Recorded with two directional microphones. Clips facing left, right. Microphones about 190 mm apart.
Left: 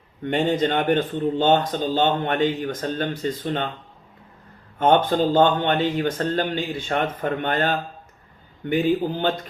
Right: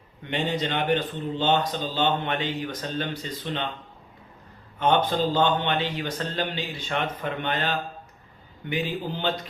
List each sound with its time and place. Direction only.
0.3 s speech: 50° left (ahead or behind)
4.8 s speech: 45° left (ahead or behind)